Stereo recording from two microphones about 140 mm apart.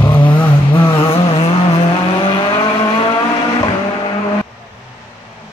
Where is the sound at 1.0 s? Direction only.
45° left (ahead or behind).